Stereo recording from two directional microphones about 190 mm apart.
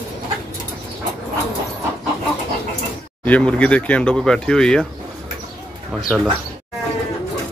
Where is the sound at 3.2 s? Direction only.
5° left (ahead or behind).